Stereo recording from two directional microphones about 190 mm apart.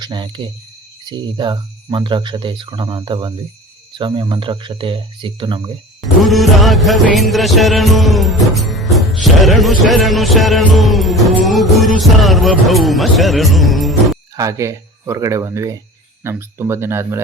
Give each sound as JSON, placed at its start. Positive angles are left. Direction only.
{"t": 0.0, "sound": "speech", "side_deg": -25}
{"t": 6.2, "sound": "music", "side_deg": 0}
{"t": 14.3, "sound": "speech", "side_deg": -15}